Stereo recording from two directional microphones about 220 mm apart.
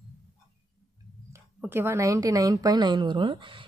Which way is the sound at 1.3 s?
10° right (ahead or behind).